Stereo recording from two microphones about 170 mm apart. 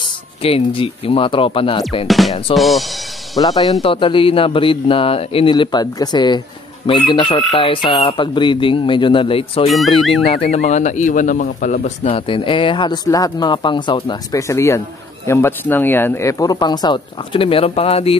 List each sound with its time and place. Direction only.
0.4 s speech: 35° left (ahead or behind)
2.0 s speech: centre (ahead or behind)
3.3 s speech: 20° left (ahead or behind); by 12.1 s 50° left (ahead or behind)
12.1 s speech: 30° left (ahead or behind)